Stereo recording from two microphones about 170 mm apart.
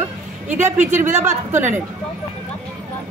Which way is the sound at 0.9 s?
15° right (ahead or behind).